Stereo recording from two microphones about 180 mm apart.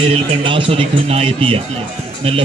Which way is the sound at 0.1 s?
30° right (ahead or behind).